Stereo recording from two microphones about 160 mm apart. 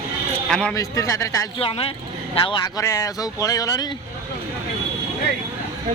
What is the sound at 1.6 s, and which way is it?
Speech, 35° left (ahead or behind).